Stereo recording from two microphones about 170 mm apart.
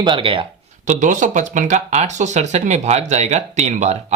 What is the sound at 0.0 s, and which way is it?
Speech, 30° right (ahead or behind).